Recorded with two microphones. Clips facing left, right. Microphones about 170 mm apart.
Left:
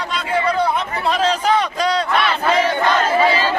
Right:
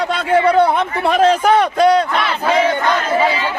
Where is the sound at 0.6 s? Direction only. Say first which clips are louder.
Right 5 dB; 60° right (ahead or behind).